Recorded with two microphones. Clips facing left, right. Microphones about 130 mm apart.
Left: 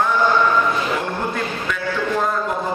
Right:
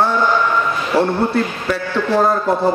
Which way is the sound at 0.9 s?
35° right (ahead or behind).